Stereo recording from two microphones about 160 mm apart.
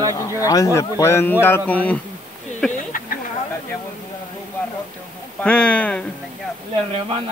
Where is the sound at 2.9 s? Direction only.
60° left (ahead or behind).